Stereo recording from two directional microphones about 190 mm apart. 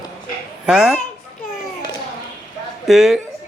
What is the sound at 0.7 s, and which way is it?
Speech, 5° right (ahead or behind).